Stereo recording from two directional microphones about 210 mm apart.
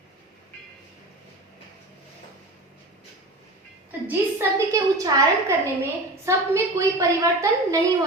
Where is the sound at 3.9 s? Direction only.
10° right (ahead or behind).